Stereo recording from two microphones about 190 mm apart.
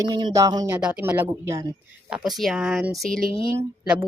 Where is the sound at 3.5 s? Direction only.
10° right (ahead or behind).